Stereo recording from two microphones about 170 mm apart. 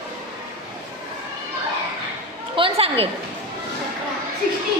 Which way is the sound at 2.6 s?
35° right (ahead or behind).